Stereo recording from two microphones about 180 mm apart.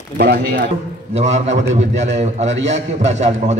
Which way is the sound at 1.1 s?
40° right (ahead or behind).